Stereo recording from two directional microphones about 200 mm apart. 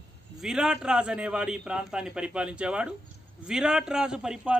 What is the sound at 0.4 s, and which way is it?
A man's voice, centre (ahead or behind).